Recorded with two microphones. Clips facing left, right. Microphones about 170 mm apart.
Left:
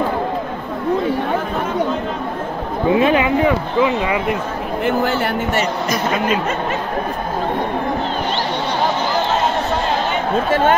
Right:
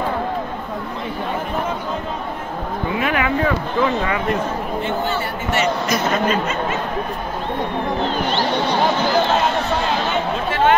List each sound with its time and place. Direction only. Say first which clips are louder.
2.9 s speech: left 7 dB; 25° left (ahead or behind)
10.5 s speech: even; 45° left (ahead or behind)